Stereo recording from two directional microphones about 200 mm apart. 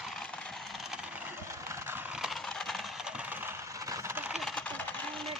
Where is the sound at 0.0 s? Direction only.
5° left (ahead or behind).